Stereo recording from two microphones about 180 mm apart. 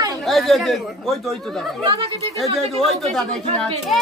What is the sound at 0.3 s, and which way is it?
Speech, centre (ahead or behind).